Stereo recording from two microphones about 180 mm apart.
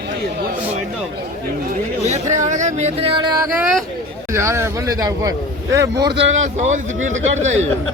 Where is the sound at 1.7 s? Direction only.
40° right (ahead or behind).